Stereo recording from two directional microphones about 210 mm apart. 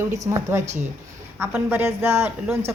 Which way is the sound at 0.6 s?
35° right (ahead or behind).